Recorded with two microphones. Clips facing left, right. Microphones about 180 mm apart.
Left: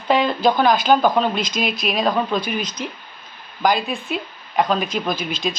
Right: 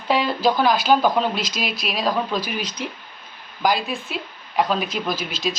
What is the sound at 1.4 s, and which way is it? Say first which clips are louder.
Speech: left 4 dB; 50° left (ahead or behind).